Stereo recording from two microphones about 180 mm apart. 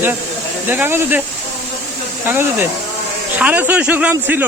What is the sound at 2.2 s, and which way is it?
Speech, 10° right (ahead or behind).